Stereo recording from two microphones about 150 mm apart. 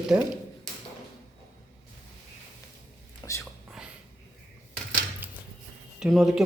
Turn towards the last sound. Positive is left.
turn(degrees=0)  # may be behind; listen again after turning